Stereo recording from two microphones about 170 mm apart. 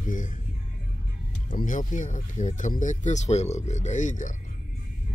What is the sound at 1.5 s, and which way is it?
Speech, 50° left (ahead or behind).